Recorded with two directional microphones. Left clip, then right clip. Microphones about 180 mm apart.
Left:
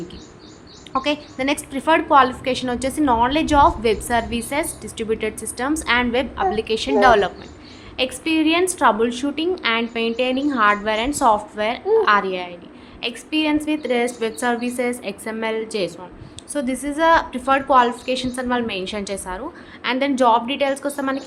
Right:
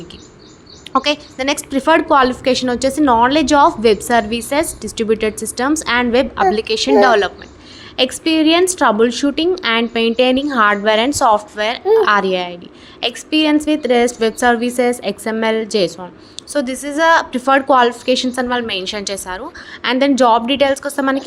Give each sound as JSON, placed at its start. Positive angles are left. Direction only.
{"t": 0.9, "sound": "a woman's voice", "side_deg": -30}